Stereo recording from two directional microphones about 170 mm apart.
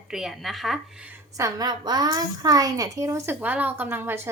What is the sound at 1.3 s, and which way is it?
A woman's voice, 20° right (ahead or behind).